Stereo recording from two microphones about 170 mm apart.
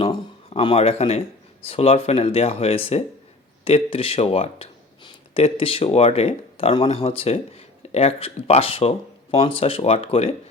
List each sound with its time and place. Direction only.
0.0 s speech: 30° left (ahead or behind)